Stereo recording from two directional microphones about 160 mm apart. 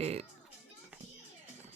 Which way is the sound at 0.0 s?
40° right (ahead or behind).